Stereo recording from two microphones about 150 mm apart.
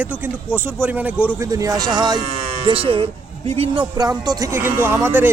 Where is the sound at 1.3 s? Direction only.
20° right (ahead or behind).